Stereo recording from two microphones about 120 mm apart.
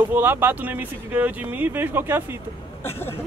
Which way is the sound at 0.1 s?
15° right (ahead or behind).